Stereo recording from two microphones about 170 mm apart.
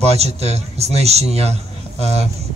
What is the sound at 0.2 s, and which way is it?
A man's voice, 40° right (ahead or behind).